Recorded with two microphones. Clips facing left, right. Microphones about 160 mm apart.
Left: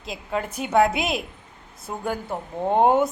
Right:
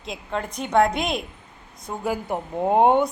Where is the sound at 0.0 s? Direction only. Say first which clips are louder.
Left 1 dB; 5° left (ahead or behind).